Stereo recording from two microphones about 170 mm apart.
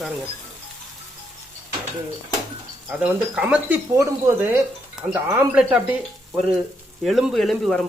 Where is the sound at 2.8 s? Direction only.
10° right (ahead or behind).